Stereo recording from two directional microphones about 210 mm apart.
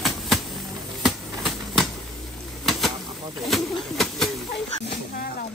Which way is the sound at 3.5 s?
Centre (ahead or behind).